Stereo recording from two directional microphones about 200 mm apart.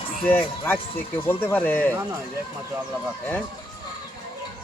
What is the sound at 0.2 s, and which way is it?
Speech, 10° left (ahead or behind).